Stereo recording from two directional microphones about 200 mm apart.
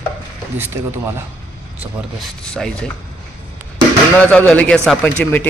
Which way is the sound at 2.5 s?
Centre (ahead or behind).